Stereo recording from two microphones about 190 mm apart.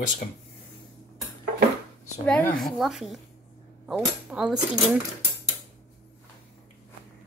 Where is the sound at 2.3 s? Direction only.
5° left (ahead or behind).